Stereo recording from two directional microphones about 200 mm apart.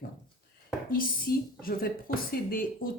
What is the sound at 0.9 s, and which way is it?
A woman's voice, 45° left (ahead or behind).